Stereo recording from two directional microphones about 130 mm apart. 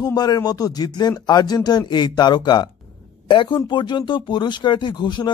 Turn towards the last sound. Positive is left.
turn(degrees=35)  # may be behind; listen again after turning